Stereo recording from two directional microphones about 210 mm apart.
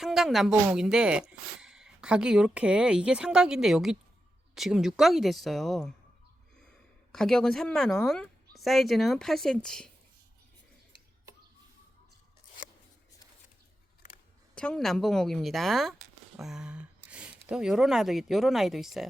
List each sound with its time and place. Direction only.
0.0 s speech: centre (ahead or behind)
7.1 s speech: centre (ahead or behind)
14.5 s speech: 5° left (ahead or behind)